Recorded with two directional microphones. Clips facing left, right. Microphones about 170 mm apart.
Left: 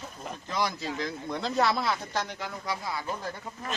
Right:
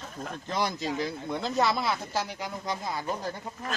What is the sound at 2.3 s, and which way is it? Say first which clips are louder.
Speech: right 1 dB; 15° right (ahead or behind).